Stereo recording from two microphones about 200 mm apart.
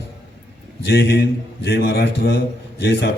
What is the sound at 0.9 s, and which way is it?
A man's voice, 55° left (ahead or behind).